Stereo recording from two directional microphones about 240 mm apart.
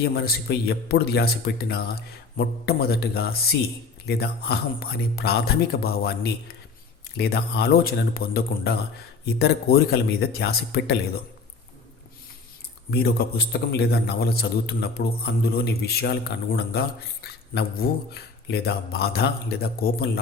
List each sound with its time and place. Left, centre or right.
0.0 s a man's voice: left
12.9 s a man's voice: left
17.2 s a man's voice: left